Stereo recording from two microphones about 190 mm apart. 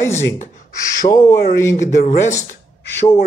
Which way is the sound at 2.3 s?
15° left (ahead or behind).